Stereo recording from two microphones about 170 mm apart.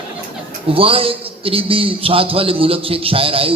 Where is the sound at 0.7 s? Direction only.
35° right (ahead or behind).